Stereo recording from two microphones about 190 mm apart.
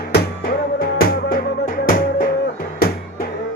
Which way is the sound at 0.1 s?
55° left (ahead or behind).